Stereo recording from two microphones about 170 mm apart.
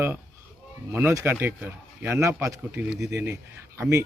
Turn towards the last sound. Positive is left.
turn(degrees=-15)  # may be behind; listen again after turning